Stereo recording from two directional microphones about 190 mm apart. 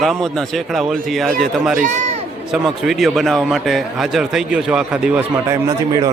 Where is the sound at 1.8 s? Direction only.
40° right (ahead or behind).